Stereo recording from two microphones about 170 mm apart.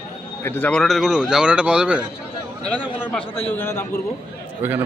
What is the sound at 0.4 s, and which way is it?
Speech, 10° left (ahead or behind).